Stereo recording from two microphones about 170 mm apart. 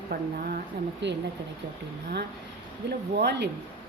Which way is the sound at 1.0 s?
90° right.